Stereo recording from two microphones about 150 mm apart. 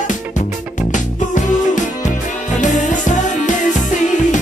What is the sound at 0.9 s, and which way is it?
Music, 55° left (ahead or behind).